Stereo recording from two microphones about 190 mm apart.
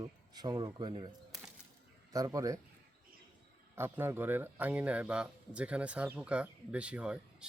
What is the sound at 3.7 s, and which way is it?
Speech, 10° right (ahead or behind).